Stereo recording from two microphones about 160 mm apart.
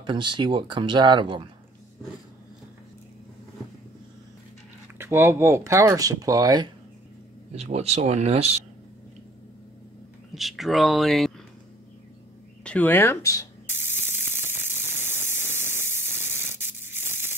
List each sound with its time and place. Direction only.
0.0 s speech: 30° right (ahead or behind)
4.9 s speech: 15° right (ahead or behind)
7.5 s speech: 40° right (ahead or behind)
10.3 s speech: centre (ahead or behind)
12.6 s speech: 10° left (ahead or behind)
13.7 s ratchet: 15° right (ahead or behind)
17.1 s crushing: 15° right (ahead or behind)